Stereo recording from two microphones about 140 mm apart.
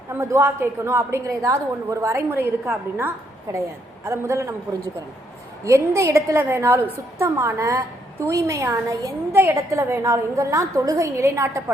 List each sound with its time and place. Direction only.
0.1 s a woman's voice: 20° right (ahead or behind)
5.6 s a woman's voice: 20° right (ahead or behind)